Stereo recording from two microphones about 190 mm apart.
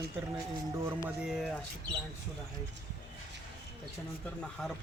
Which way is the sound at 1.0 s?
Centre (ahead or behind).